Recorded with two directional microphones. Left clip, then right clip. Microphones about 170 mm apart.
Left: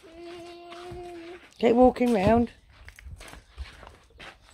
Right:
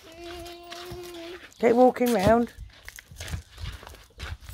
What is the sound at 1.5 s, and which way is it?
Speech, 10° left (ahead or behind).